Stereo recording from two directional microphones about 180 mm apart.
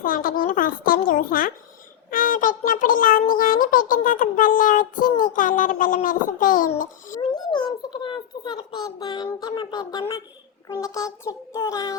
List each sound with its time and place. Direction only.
0.0 s a child's voice: 50° left (ahead or behind)
7.2 s a sound: 25° left (ahead or behind)
8.0 s speech: 25° left (ahead or behind)
10.7 s child singing: 20° left (ahead or behind)